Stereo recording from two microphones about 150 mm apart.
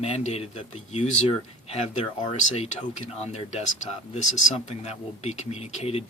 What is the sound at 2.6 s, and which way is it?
Speech, 45° left (ahead or behind).